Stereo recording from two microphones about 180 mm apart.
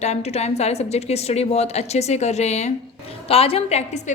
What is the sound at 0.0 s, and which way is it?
A woman's voice, 35° left (ahead or behind).